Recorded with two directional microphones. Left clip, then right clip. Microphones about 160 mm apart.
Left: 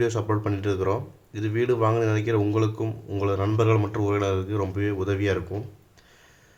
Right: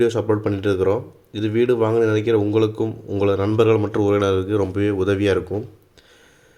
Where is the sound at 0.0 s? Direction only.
20° right (ahead or behind).